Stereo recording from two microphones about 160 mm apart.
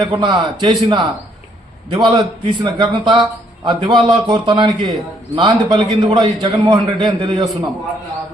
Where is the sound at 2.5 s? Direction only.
30° right (ahead or behind).